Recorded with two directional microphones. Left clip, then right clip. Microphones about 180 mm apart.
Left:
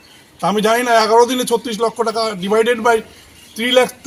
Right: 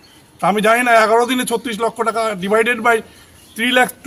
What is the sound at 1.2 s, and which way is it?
Speech, 25° right (ahead or behind).